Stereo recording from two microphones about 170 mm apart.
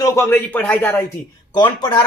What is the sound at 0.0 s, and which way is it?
Speech, 15° left (ahead or behind).